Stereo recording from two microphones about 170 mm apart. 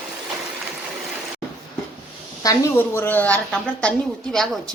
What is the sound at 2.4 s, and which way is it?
A woman's voice, 15° left (ahead or behind).